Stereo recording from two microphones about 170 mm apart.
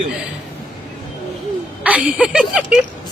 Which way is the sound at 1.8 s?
10° right (ahead or behind).